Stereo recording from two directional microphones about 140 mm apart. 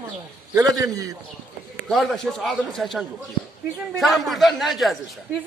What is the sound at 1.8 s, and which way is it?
A man's voice, centre (ahead or behind).